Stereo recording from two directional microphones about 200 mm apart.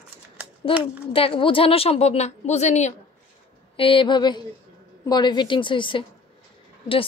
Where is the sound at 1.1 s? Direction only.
25° left (ahead or behind).